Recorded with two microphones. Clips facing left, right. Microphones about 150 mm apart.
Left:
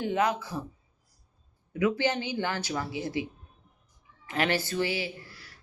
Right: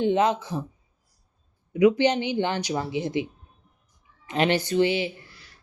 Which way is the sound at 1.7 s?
20° right (ahead or behind).